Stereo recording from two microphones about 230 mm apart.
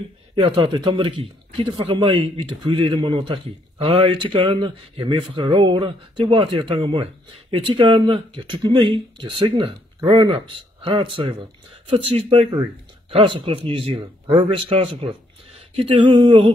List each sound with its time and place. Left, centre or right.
0.4 s speech: right